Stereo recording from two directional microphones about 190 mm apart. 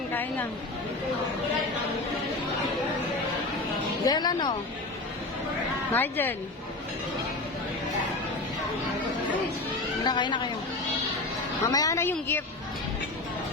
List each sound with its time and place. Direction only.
0.1 s a sound: 10° left (ahead or behind)
4.0 s a woman's voice: 20° left (ahead or behind)
5.9 s a woman's voice: 10° left (ahead or behind)
10.0 s a woman's voice: 25° left (ahead or behind)
11.7 s a woman's voice: 20° left (ahead or behind)